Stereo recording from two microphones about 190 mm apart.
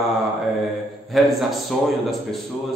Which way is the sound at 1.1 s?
Centre (ahead or behind).